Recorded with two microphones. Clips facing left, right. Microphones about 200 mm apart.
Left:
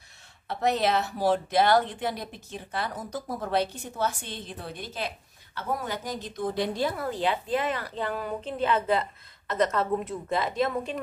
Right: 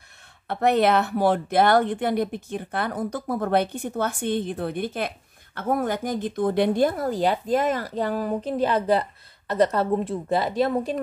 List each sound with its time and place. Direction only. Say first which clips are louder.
0.5 s a woman's voice: right 5 dB; 60° right (ahead or behind); by 11.0 s 35° right (ahead or behind)